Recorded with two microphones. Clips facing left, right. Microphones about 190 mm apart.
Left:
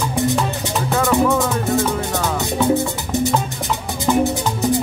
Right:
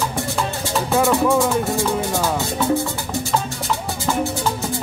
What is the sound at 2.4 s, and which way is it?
Music, 20° left (ahead or behind).